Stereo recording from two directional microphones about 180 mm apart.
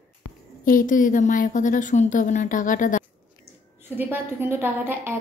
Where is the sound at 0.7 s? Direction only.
50° left (ahead or behind).